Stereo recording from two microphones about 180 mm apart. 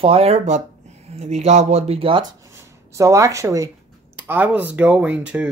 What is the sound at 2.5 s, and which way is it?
Speech, 15° right (ahead or behind).